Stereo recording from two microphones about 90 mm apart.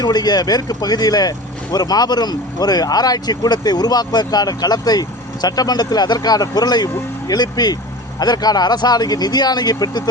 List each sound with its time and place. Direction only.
0.0 s speech: 50° left (ahead or behind)